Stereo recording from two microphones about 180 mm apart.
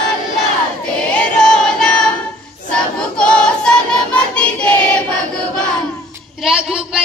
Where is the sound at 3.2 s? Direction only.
5° left (ahead or behind).